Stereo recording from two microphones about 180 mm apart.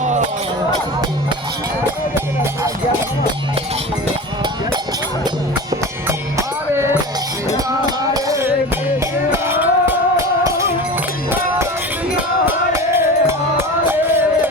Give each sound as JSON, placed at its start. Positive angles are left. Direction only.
{"t": 5.7, "sound": "music", "side_deg": -15}
{"t": 9.3, "sound": "cowbell", "side_deg": -10}
{"t": 12.7, "sound": "a sound", "side_deg": -15}